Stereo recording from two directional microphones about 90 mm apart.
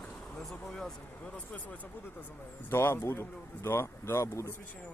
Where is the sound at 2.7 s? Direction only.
30° left (ahead or behind).